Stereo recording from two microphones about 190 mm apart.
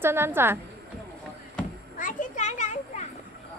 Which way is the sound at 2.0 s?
45° left (ahead or behind).